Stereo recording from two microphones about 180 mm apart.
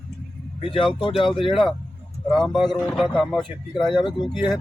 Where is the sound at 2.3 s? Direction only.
Centre (ahead or behind).